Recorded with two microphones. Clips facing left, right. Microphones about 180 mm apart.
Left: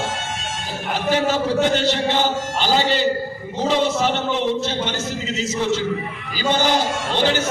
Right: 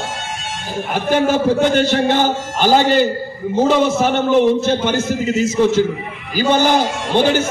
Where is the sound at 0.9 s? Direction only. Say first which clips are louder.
Right 4 dB; 50° right (ahead or behind).